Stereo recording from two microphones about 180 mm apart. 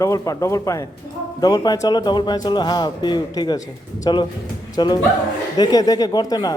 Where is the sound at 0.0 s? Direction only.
15° left (ahead or behind).